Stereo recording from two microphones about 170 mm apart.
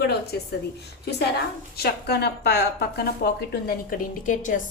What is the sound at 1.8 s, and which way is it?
A woman's voice, 70° left (ahead or behind).